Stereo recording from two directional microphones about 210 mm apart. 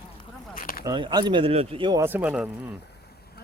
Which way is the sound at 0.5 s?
45° left (ahead or behind).